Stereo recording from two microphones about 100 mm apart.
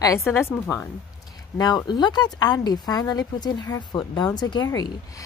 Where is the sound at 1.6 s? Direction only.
40° left (ahead or behind).